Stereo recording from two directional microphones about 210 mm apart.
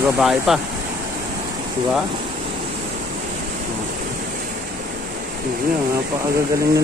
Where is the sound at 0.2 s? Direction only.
Centre (ahead or behind).